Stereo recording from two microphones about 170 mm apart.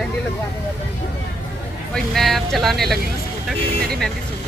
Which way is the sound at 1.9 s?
Centre (ahead or behind).